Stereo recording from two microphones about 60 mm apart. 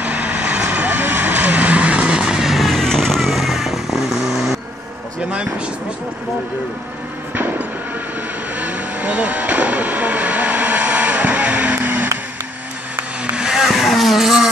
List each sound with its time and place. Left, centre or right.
0.0 s vehicle: right; by 4.6 s centre
7.3 s train: right
8.5 s vehicle: right
13.4 s vehicle: centre